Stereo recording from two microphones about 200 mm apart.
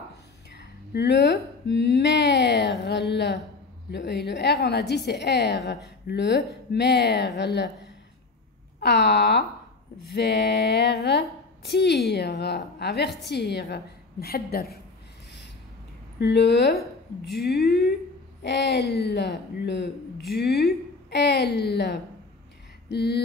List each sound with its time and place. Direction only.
0.6 s a woman's voice: 55° left (ahead or behind)
8.7 s a woman's voice: 55° left (ahead or behind)
16.2 s a woman's voice: 55° left (ahead or behind)